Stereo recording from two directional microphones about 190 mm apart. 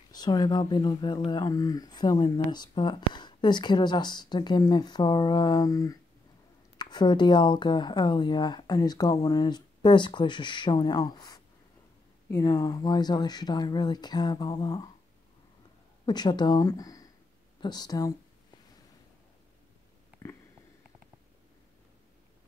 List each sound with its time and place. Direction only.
0.1 s speech: 20° left (ahead or behind)
16.1 s speech: 20° left (ahead or behind)
20.2 s a sound: 10° left (ahead or behind)